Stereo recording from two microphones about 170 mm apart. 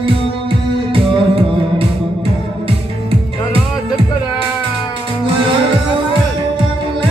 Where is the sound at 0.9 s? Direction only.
35° right (ahead or behind).